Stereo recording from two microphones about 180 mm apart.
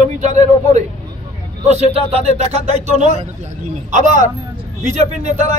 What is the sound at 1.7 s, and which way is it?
A man's voice, 35° right (ahead or behind).